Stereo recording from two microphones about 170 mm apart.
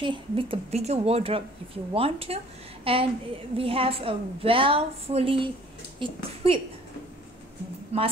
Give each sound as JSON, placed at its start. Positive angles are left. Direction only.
{"t": 0.0, "sound": "a woman's voice", "side_deg": -30}
{"t": 7.9, "sound": "a woman's voice", "side_deg": -40}